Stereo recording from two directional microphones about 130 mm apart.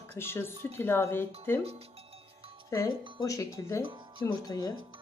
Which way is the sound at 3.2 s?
25° left (ahead or behind).